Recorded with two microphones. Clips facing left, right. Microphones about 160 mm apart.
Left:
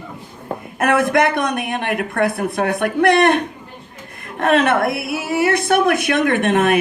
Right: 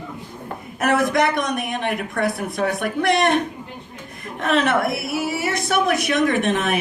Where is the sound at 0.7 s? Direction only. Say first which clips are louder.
Left 3 dB; 55° left (ahead or behind).